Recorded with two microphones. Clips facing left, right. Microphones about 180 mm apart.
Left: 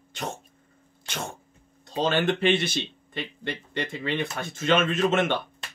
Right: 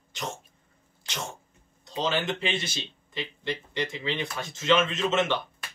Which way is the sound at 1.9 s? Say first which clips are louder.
Left 4 dB; 55° left (ahead or behind).